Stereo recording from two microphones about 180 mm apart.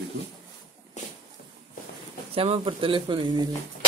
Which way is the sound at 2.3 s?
30° right (ahead or behind).